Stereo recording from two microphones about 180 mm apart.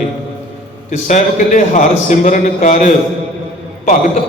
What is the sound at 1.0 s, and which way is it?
A man's voice, 40° left (ahead or behind).